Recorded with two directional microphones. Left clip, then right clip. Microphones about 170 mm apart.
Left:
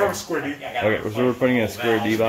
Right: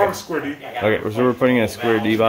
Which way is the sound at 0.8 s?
20° right (ahead or behind).